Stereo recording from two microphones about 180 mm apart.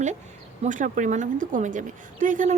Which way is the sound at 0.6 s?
45° right (ahead or behind).